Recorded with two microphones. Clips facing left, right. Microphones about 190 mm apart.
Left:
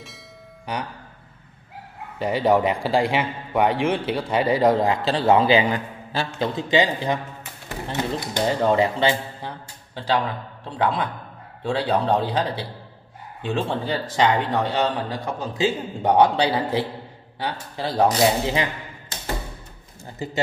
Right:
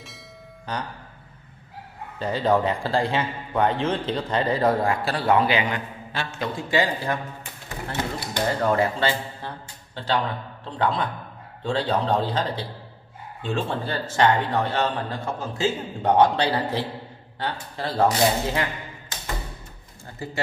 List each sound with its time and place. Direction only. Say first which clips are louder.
0.7 s a man's voice: left 2 dB; 10° left (ahead or behind)
2.1 s a man's voice: left 2 dB; 15° left (ahead or behind); by 6.5 s 30° left (ahead or behind)
6.5 s a man's voice: left 2 dB; 20° left (ahead or behind)